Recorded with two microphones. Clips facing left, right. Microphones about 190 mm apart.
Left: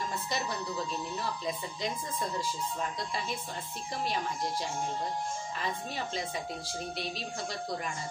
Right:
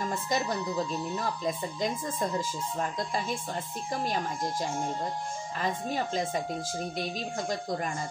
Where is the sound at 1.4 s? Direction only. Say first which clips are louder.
Right 4 dB; 45° right (ahead or behind).